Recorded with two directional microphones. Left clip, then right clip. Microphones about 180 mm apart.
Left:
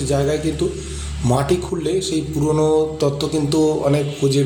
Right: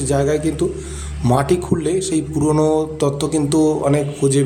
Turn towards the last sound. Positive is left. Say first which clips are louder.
# right 1 dB
turn(degrees=-15)  # may be behind; listen again after turning